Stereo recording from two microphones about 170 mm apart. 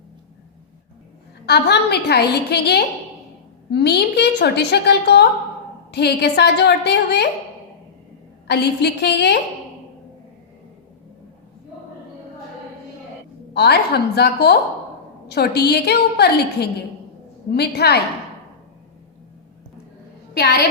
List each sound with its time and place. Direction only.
1.5 s a woman's voice: 75° left (ahead or behind)
8.4 s a woman's voice: 75° left (ahead or behind)
13.5 s a woman's voice: 75° left (ahead or behind)
20.3 s a woman's voice: 80° left